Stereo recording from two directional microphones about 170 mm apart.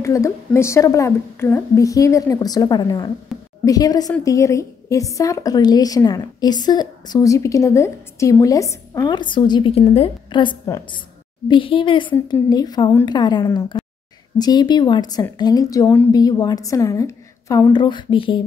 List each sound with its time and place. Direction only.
0.0 s a woman's voice: 20° left (ahead or behind)
3.3 s a sound: centre (ahead or behind)
3.6 s a woman's voice: 20° left (ahead or behind)